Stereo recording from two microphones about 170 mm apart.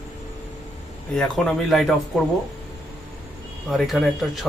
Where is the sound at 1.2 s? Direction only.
5° left (ahead or behind).